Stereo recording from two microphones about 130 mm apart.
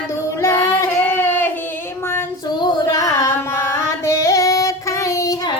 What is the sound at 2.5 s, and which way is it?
Carnatic music, 30° left (ahead or behind).